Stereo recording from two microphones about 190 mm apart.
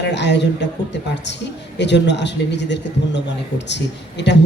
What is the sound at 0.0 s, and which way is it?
Speech, 65° left (ahead or behind).